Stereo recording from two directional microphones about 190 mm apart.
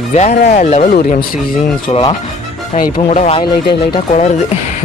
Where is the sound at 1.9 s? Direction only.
30° left (ahead or behind).